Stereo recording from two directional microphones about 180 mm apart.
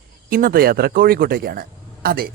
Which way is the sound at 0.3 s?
50° right (ahead or behind).